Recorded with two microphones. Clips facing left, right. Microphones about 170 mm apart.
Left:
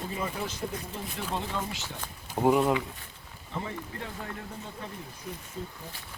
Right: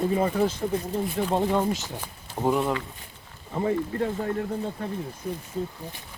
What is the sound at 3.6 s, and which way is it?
Speech, 45° right (ahead or behind).